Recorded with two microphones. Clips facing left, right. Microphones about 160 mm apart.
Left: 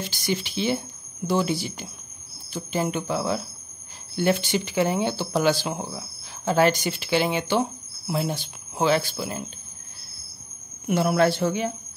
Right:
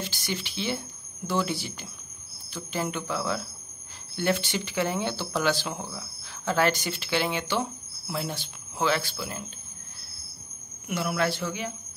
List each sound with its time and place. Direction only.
0.0 s speech: 15° left (ahead or behind)
10.9 s speech: 35° left (ahead or behind)